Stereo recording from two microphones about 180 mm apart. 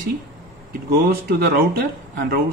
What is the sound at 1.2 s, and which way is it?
Speech, 55° right (ahead or behind).